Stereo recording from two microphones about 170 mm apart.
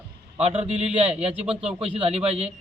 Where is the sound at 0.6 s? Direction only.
40° right (ahead or behind).